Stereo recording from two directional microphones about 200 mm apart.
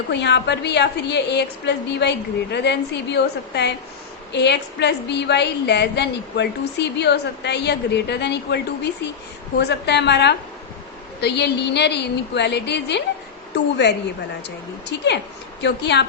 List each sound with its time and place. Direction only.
0.1 s a woman's voice: 60° left (ahead or behind)